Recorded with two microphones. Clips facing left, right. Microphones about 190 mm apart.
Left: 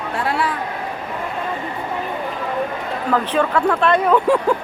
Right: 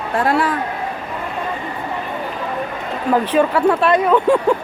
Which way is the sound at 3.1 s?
10° right (ahead or behind).